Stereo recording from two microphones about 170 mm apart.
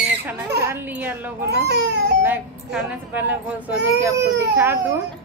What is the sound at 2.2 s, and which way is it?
Speech, 10° right (ahead or behind).